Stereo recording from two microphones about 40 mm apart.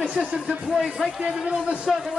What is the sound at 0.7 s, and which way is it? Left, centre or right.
Speech, centre.